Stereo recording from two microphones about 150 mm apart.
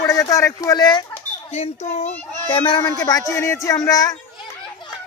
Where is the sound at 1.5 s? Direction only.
45° left (ahead or behind).